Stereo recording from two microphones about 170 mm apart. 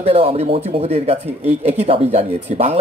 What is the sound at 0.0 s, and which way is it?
A man's voice, 35° right (ahead or behind).